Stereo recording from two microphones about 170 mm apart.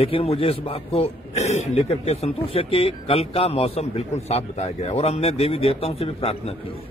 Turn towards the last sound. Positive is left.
turn(degrees=35)  # may be behind; listen again after turning